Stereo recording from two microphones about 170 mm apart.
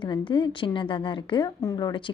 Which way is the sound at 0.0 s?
30° left (ahead or behind).